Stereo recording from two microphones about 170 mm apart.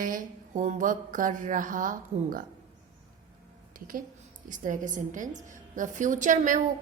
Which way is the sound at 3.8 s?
55° right (ahead or behind).